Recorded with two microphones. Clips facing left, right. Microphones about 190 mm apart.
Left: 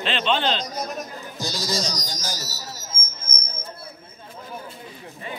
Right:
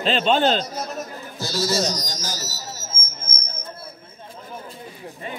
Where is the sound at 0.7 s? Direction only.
15° left (ahead or behind).